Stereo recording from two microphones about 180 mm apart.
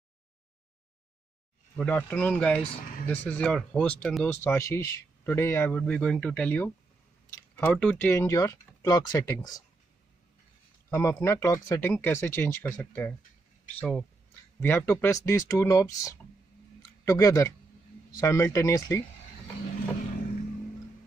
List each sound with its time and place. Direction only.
1.8 s speech: 5° left (ahead or behind)
10.9 s speech: 15° left (ahead or behind)